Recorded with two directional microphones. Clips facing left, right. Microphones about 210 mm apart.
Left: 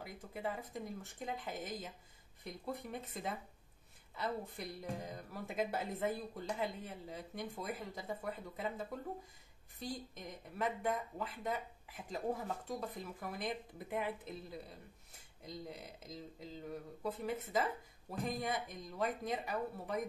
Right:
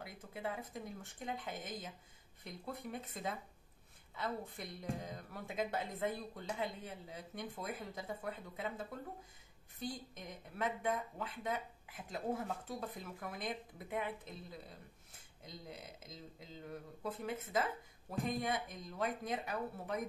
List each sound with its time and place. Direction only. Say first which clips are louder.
0.0 s speech: left 2 dB; centre (ahead or behind)